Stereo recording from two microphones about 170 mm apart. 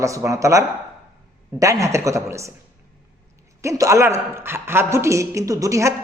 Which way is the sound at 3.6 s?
15° right (ahead or behind).